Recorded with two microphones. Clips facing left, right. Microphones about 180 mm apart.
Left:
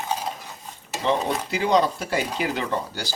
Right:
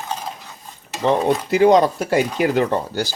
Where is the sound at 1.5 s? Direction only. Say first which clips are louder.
Right 8 dB; 50° right (ahead or behind).